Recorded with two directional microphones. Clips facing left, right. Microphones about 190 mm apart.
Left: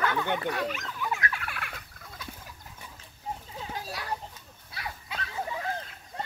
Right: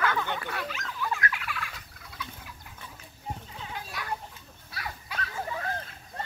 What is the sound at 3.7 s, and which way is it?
Children playing, 35° left (ahead or behind).